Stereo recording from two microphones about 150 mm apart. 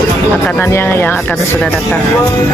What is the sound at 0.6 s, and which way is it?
Speech, 15° left (ahead or behind).